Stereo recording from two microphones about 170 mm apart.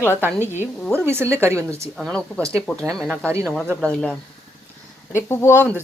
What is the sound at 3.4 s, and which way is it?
Speech, 5° left (ahead or behind).